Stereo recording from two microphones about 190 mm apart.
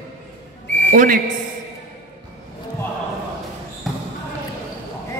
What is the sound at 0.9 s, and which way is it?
Speech, 45° right (ahead or behind).